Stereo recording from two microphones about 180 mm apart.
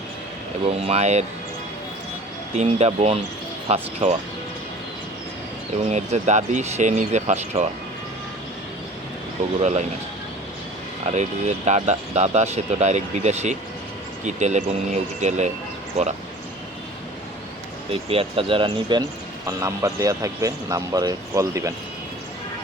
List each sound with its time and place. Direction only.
0.7 s speech: 35° right (ahead or behind)
2.6 s speech: 35° right (ahead or behind)
5.9 s speech: 40° right (ahead or behind)
9.6 s speech: 40° right (ahead or behind)
11.0 s speech: 40° right (ahead or behind)
18.1 s speech: 30° right (ahead or behind)